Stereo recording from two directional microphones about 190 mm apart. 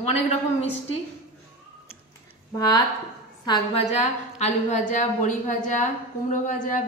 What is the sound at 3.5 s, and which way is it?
A woman's voice, 35° left (ahead or behind).